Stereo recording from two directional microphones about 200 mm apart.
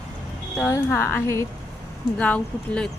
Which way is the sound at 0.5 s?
10° left (ahead or behind).